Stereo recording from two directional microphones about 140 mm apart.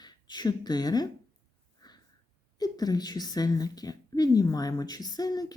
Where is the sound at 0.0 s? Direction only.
30° left (ahead or behind).